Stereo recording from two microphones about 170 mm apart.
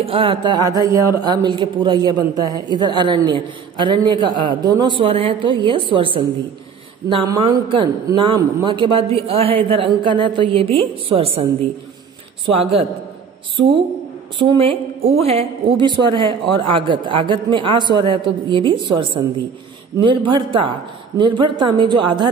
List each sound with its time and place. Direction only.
0.0 s a woman's voice: 30° right (ahead or behind)
14.4 s a woman's voice: 35° right (ahead or behind)